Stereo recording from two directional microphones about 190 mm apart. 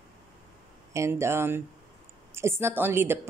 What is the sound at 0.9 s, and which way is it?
A woman's voice, 15° right (ahead or behind).